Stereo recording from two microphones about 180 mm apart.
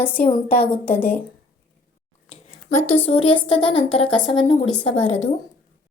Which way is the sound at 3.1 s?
30° left (ahead or behind).